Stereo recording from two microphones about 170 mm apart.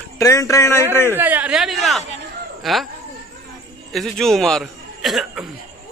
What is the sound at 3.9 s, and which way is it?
Speech, centre (ahead or behind).